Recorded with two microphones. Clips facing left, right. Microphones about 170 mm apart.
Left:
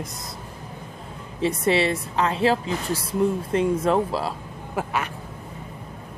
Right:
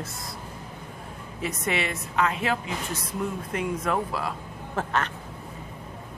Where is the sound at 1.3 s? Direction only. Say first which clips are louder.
Left 8 dB; 30° left (ahead or behind).